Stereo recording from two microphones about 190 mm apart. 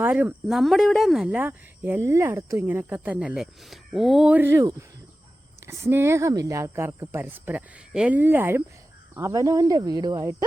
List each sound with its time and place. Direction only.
0.0 s speech: 10° right (ahead or behind)